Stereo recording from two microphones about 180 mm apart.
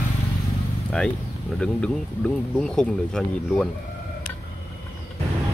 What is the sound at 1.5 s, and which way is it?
Speech, 5° left (ahead or behind).